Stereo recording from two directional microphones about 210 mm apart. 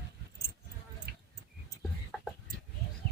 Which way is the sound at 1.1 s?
50° right (ahead or behind).